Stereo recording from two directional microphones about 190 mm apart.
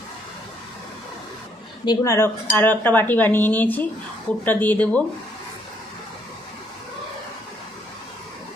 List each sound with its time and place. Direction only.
1.8 s speech: 20° left (ahead or behind)